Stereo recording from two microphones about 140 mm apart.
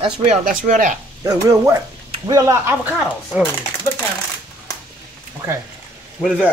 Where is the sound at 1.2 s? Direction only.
25° right (ahead or behind).